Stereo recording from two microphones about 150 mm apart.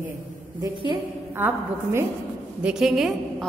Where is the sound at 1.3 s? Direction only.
15° right (ahead or behind).